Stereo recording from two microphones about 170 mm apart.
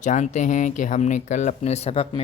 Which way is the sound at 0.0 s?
45° left (ahead or behind).